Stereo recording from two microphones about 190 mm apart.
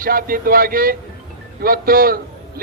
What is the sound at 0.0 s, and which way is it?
A man's voice, 50° right (ahead or behind).